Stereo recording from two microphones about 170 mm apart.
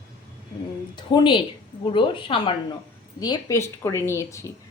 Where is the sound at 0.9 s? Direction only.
25° left (ahead or behind).